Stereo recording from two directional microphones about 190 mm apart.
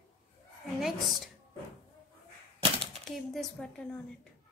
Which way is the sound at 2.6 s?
30° right (ahead or behind).